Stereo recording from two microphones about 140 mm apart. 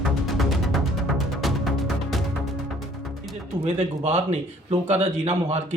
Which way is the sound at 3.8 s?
55° right (ahead or behind).